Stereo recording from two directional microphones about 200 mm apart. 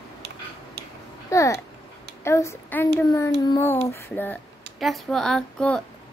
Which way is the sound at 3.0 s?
15° left (ahead or behind).